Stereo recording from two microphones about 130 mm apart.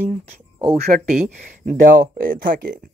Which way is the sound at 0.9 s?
90° right.